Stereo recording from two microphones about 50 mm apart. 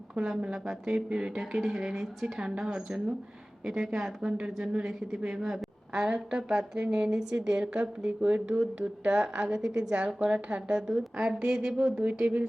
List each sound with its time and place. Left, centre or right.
0.2 s speech: centre
10.2 s speech: right
12.2 s speech: right